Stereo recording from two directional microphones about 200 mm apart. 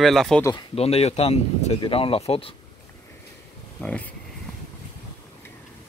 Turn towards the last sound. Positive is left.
turn(degrees=5)  # may be behind; listen again after turning